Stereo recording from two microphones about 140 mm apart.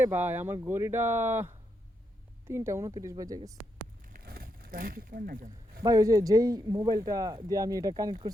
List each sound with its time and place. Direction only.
0.0 s speech: 15° right (ahead or behind)
4.0 s a sound: 90° right
5.8 s speech: 25° right (ahead or behind)